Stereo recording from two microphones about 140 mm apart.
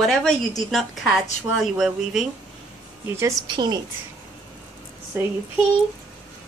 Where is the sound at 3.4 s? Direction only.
30° right (ahead or behind).